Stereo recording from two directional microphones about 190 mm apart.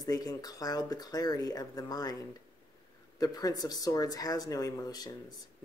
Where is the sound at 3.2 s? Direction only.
20° left (ahead or behind).